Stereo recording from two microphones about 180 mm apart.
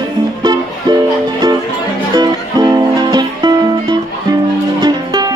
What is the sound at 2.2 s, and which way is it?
Music, 20° right (ahead or behind).